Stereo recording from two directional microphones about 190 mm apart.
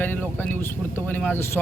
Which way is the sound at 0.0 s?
10° left (ahead or behind).